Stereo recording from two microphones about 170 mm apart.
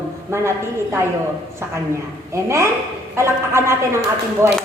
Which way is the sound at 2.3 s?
15° right (ahead or behind).